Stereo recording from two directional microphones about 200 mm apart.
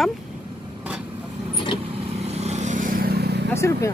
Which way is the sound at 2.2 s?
35° right (ahead or behind).